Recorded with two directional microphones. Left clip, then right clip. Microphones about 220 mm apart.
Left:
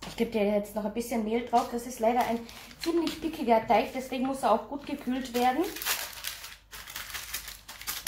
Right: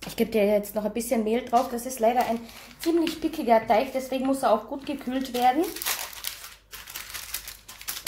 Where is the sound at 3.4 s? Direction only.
45° right (ahead or behind).